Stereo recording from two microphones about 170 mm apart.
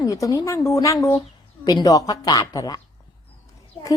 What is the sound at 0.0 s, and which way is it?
Speech, 20° left (ahead or behind).